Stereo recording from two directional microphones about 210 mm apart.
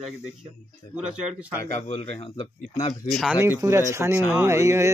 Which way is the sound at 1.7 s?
35° left (ahead or behind).